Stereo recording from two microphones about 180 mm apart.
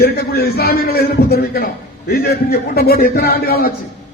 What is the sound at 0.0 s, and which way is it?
A man's voice, 60° left (ahead or behind).